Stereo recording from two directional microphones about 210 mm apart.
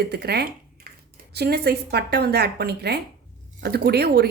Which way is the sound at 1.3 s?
50° right (ahead or behind).